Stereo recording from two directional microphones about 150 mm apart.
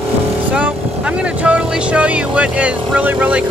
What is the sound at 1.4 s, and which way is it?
Speech, 10° right (ahead or behind).